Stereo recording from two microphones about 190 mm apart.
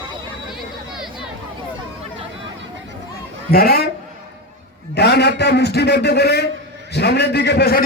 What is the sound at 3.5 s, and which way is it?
Speech, 55° left (ahead or behind).